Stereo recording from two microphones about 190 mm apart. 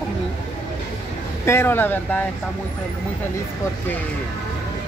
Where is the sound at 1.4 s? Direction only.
10° left (ahead or behind).